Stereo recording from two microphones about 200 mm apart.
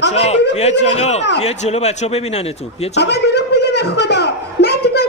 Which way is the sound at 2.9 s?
55° left (ahead or behind).